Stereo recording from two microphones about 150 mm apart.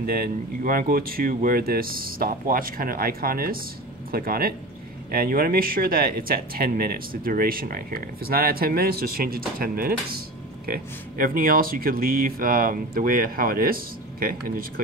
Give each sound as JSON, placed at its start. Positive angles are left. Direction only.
{"t": 0.0, "sound": "speech", "side_deg": -80}